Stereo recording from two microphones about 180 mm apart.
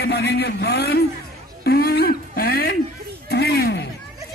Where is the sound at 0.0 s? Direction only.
65° left (ahead or behind).